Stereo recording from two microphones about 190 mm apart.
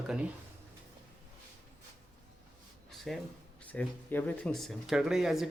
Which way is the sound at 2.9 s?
Centre (ahead or behind).